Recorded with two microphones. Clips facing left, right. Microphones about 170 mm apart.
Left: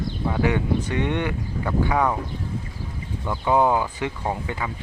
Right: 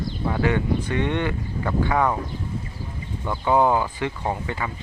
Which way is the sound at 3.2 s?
5° left (ahead or behind).